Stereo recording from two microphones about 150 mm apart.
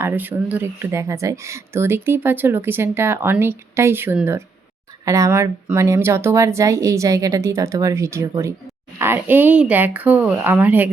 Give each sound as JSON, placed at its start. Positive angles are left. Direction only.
{"t": 0.0, "sound": "speech", "side_deg": -15}